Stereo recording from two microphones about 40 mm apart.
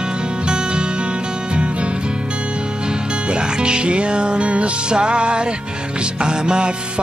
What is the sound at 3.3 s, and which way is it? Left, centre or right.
Music, right.